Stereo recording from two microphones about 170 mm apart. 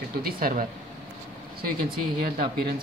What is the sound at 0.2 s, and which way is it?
Speech, 60° right (ahead or behind).